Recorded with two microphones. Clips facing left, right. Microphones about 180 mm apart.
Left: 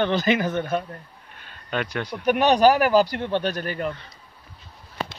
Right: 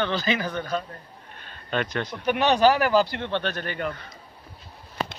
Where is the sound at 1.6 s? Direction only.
10° left (ahead or behind).